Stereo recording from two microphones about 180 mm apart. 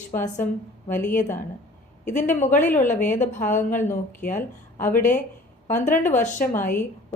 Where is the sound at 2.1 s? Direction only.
45° left (ahead or behind).